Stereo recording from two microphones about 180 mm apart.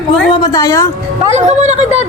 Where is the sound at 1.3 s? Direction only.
40° right (ahead or behind).